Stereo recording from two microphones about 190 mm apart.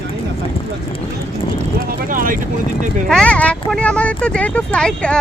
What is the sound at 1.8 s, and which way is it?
Speech, 45° right (ahead or behind).